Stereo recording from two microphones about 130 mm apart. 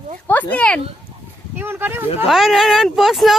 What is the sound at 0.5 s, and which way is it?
Speech, 10° left (ahead or behind).